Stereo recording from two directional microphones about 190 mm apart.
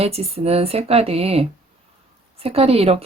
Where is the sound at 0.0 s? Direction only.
30° right (ahead or behind).